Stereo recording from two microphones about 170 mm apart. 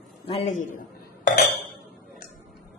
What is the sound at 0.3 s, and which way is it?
Speech, 40° left (ahead or behind).